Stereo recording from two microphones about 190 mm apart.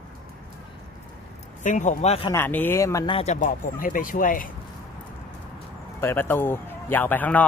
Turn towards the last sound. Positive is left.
turn(degrees=10)  # may be behind; listen again after turning